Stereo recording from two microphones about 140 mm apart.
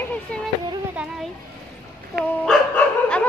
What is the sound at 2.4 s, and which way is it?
Dog, 10° left (ahead or behind).